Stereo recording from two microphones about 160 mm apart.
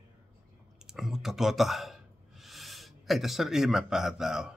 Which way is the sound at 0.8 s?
Centre (ahead or behind).